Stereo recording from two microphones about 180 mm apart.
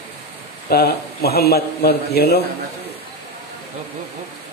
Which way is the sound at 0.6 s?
60° left (ahead or behind).